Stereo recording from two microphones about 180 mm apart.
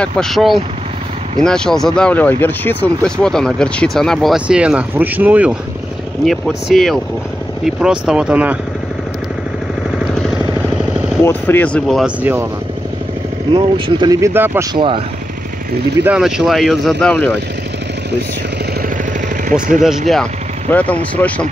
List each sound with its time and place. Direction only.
0.0 s speech: centre (ahead or behind)
11.2 s speech: 10° left (ahead or behind)
12.2 s speech: 10° right (ahead or behind)
13.5 s speech: 25° right (ahead or behind)
14.7 s speech: 30° right (ahead or behind)
16.0 s speech: 5° right (ahead or behind)
20.7 s speech: 10° left (ahead or behind)